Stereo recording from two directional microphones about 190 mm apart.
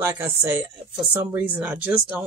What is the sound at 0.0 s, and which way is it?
Speech, 10° right (ahead or behind).